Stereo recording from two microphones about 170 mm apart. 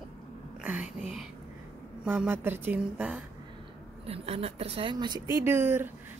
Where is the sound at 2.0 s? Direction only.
10° right (ahead or behind).